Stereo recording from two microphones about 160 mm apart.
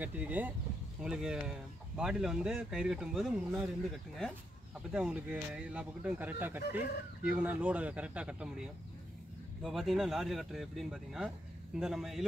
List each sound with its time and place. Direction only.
0.0 s speech: 10° right (ahead or behind)